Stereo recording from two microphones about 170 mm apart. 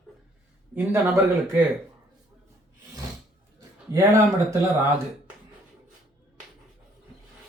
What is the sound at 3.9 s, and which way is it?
Speech, 20° right (ahead or behind).